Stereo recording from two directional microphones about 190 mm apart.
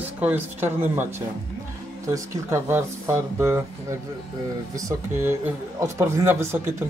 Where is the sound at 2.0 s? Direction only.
15° right (ahead or behind).